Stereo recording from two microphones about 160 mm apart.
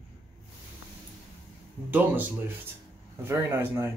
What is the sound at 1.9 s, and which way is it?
Speech, 10° right (ahead or behind).